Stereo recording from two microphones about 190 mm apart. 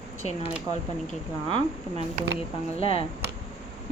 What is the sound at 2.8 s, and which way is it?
Speech, 30° left (ahead or behind).